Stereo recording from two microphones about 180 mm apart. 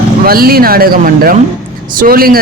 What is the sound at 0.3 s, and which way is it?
Speech, 55° right (ahead or behind).